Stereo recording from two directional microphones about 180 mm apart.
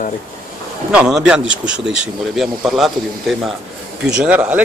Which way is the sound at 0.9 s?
5° right (ahead or behind).